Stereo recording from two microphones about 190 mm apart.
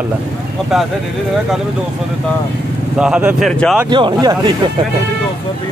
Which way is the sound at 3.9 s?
20° right (ahead or behind).